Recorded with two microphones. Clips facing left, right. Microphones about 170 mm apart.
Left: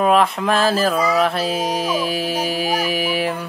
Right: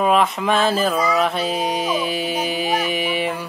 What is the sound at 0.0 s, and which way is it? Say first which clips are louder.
Mantra: left 1 dB; centre (ahead or behind).